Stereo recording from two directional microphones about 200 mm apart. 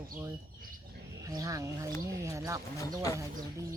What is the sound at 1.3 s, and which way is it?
Speech, 15° right (ahead or behind).